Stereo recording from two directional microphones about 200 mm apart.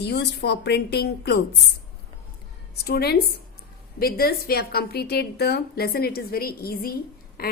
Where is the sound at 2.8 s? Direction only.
50° left (ahead or behind).